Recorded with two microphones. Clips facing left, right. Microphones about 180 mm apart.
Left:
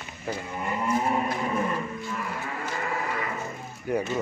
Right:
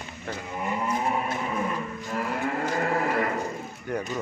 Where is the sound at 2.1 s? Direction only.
50° right (ahead or behind).